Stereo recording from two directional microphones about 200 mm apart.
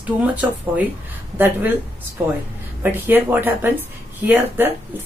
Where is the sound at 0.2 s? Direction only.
10° right (ahead or behind).